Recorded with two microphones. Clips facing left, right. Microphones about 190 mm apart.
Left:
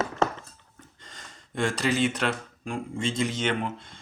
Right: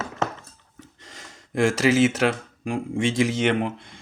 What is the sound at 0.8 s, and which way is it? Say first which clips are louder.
Speech: right 5 dB; 75° right (ahead or behind).